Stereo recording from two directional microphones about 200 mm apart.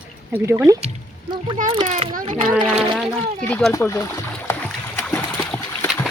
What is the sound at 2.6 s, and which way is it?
Speech, 25° right (ahead or behind).